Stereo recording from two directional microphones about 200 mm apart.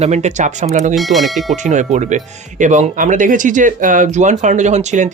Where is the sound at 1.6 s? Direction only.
40° right (ahead or behind).